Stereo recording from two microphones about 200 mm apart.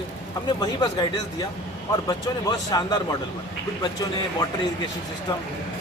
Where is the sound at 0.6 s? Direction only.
20° left (ahead or behind).